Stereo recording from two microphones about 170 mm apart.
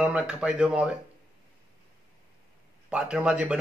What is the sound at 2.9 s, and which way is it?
Speech, 5° right (ahead or behind).